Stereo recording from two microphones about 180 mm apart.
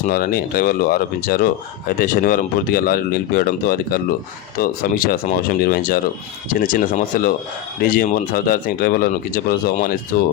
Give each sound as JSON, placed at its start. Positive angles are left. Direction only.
{"t": 0.1, "sound": "speech", "side_deg": 55}